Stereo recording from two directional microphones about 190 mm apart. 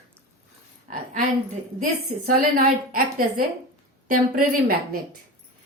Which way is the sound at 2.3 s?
45° right (ahead or behind).